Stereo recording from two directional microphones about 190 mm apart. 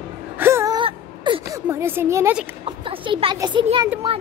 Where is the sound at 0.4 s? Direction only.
15° right (ahead or behind).